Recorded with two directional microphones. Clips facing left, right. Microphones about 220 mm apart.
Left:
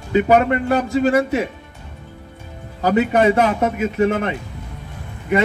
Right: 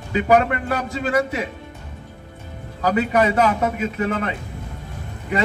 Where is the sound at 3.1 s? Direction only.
25° left (ahead or behind).